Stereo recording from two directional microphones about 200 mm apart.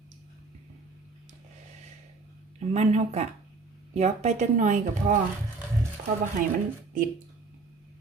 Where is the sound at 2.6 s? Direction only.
35° right (ahead or behind).